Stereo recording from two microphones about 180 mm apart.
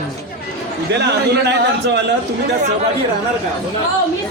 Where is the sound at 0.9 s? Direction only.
70° right (ahead or behind).